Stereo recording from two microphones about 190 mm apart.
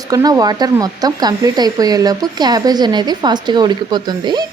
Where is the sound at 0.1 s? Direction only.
20° right (ahead or behind).